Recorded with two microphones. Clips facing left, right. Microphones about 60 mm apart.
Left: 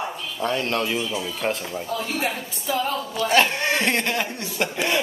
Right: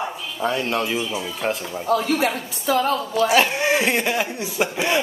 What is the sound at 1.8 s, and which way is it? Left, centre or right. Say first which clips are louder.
Speech: right 8 dB; right.